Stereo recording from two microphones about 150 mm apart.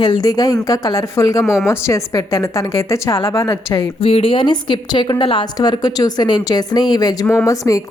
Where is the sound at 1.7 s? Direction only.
20° left (ahead or behind).